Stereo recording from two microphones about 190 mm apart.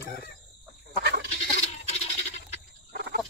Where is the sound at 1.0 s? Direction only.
60° right (ahead or behind).